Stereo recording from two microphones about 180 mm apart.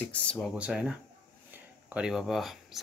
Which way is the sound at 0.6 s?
5° right (ahead or behind).